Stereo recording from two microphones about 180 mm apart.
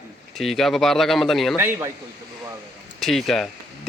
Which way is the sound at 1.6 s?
15° right (ahead or behind).